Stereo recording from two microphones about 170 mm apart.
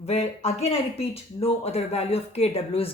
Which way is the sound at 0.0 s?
40° left (ahead or behind).